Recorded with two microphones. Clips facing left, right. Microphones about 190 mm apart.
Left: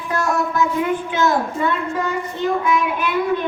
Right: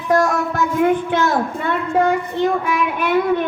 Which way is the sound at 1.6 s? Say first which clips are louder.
Right 4 dB; 55° right (ahead or behind).